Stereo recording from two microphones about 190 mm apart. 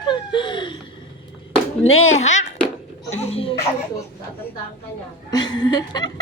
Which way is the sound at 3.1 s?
35° left (ahead or behind).